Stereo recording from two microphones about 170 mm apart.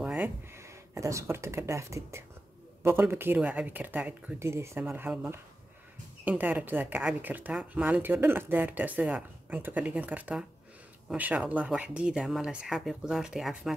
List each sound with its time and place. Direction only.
0.0 s a woman's voice: 10° right (ahead or behind)